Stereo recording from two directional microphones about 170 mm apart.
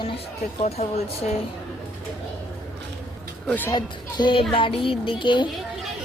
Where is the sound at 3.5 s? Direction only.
10° left (ahead or behind).